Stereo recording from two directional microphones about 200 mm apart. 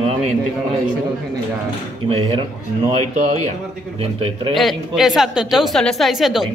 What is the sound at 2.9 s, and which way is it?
A man's voice, 35° right (ahead or behind).